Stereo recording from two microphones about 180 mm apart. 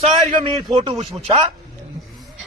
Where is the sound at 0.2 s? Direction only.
35° right (ahead or behind).